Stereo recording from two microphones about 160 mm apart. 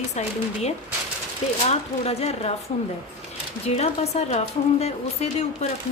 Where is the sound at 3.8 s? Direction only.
40° left (ahead or behind).